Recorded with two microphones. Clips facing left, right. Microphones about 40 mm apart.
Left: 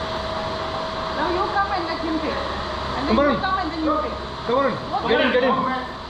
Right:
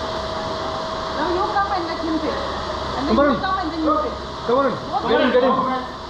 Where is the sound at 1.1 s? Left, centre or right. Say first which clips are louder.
Right 2 dB; left.